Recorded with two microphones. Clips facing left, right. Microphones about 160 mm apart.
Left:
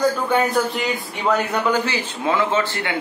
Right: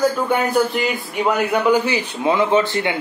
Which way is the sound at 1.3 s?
15° right (ahead or behind).